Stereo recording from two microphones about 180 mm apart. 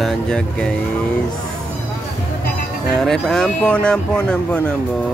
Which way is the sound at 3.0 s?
Centre (ahead or behind).